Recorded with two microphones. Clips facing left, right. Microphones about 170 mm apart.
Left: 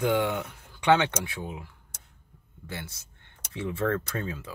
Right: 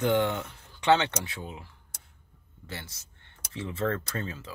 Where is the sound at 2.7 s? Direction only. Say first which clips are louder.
Left 3 dB; 10° left (ahead or behind).